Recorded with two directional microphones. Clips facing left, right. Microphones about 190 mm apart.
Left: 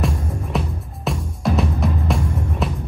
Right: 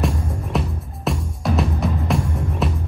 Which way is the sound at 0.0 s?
Centre (ahead or behind).